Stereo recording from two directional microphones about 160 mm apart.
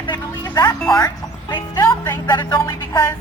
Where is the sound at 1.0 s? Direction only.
25° left (ahead or behind).